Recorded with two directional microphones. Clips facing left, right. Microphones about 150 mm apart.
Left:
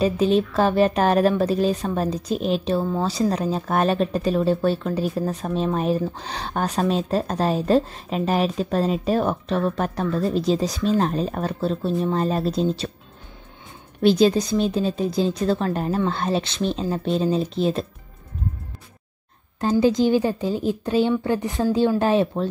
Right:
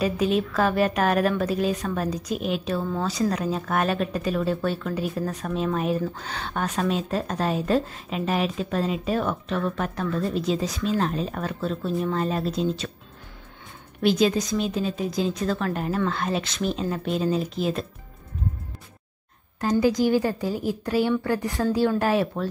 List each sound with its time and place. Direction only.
0.0 s speech: 30° left (ahead or behind)
14.0 s speech: 30° left (ahead or behind)
19.8 s speech: 25° left (ahead or behind)